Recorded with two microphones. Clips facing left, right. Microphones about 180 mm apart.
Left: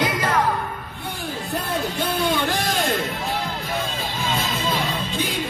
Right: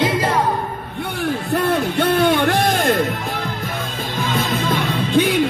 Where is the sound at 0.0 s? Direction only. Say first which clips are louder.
Right 4 dB; 25° right (ahead or behind).